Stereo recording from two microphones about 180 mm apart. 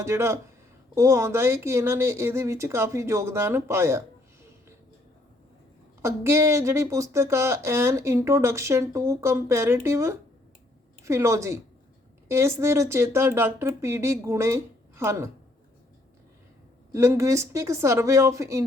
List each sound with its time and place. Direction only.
0.0 s speech: 15° right (ahead or behind)
6.0 s speech: 15° right (ahead or behind)
16.9 s speech: 15° right (ahead or behind)